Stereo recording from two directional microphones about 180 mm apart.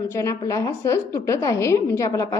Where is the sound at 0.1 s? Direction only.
15° left (ahead or behind).